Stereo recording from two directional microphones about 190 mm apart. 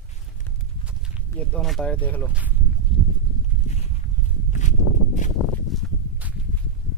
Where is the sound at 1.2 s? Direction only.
5° left (ahead or behind).